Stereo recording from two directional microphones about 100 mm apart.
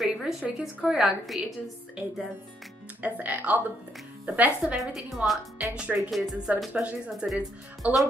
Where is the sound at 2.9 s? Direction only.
15° right (ahead or behind).